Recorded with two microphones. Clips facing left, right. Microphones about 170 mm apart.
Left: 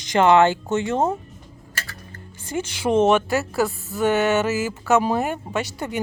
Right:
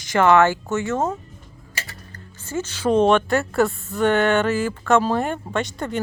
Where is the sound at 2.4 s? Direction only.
15° left (ahead or behind).